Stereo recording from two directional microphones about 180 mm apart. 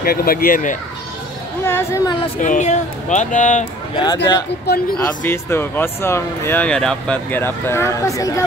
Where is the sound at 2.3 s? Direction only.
45° left (ahead or behind).